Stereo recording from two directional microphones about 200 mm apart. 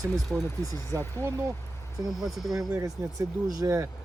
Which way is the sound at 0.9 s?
10° left (ahead or behind).